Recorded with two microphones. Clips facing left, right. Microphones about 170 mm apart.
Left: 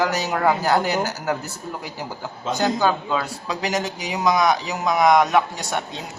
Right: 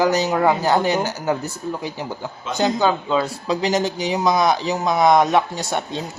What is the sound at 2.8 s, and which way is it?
Speech, 25° right (ahead or behind).